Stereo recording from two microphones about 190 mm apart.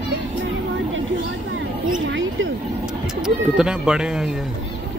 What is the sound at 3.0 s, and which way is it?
Speech, 5° right (ahead or behind).